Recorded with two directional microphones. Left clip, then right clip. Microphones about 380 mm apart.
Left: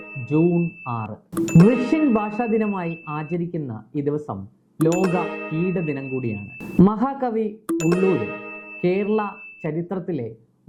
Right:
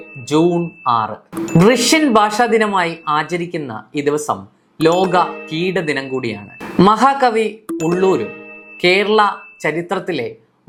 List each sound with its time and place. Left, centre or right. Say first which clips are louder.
0.3 s speech: right 6 dB; centre
1.1 s speech: right 3 dB; centre